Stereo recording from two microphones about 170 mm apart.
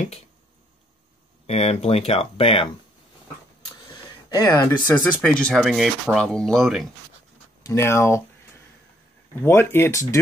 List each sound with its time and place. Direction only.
1.5 s speech: 35° left (ahead or behind)
4.3 s speech: 20° left (ahead or behind); by 6.9 s centre (ahead or behind)
7.6 s speech: 15° left (ahead or behind)
9.3 s speech: 15° left (ahead or behind)